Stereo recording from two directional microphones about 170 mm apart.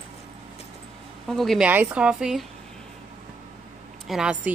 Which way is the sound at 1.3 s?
Centre (ahead or behind).